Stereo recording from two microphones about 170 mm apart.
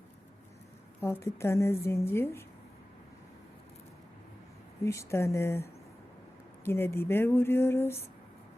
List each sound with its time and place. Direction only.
1.0 s a woman's voice: 15° left (ahead or behind)
4.8 s a woman's voice: 15° left (ahead or behind)
6.7 s a woman's voice: 15° left (ahead or behind)